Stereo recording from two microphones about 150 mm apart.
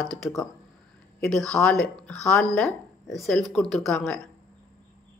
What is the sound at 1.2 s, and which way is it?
Speech, 5° left (ahead or behind).